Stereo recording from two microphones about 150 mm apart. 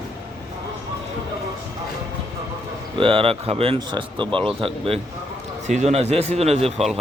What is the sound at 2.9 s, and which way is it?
Speech, 35° right (ahead or behind).